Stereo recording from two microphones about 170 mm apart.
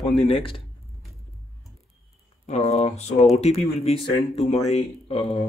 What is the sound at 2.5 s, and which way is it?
Speech, 40° left (ahead or behind).